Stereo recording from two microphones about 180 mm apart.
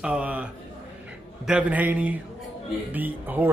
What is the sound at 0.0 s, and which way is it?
Speech, 5° right (ahead or behind).